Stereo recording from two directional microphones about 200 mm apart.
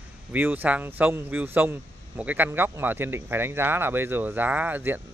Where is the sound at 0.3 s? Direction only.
10° right (ahead or behind).